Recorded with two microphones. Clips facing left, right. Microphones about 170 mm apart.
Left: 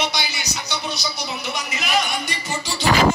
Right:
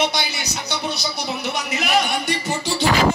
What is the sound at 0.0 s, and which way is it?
Speech, 55° right (ahead or behind).